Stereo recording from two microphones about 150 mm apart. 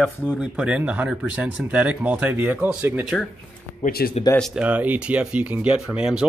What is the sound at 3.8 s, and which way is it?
Speech, 90° left.